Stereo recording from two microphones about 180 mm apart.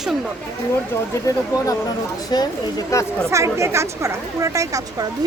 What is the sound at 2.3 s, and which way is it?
Speech, 25° left (ahead or behind).